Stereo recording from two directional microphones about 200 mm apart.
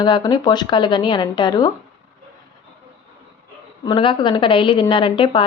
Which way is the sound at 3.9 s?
25° left (ahead or behind).